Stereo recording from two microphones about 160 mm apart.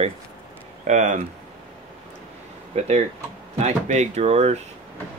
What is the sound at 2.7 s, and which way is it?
A man's voice, 40° right (ahead or behind).